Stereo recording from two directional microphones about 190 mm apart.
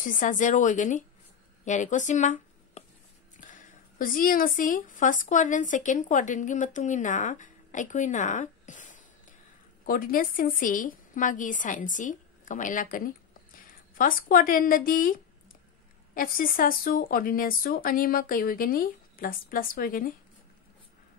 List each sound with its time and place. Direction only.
0.0 s a woman's voice: 40° left (ahead or behind)
16.2 s speech: 50° left (ahead or behind)